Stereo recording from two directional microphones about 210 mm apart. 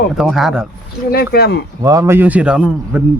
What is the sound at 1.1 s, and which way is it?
Speech, 50° left (ahead or behind).